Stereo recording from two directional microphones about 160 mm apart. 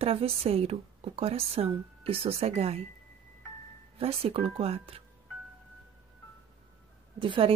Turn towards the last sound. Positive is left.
turn(degrees=-35)  # may be behind; listen again after turning